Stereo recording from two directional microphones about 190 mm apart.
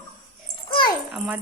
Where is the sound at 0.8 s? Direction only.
25° left (ahead or behind).